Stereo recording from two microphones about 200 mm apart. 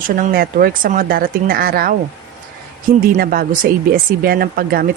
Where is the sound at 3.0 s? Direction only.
45° right (ahead or behind).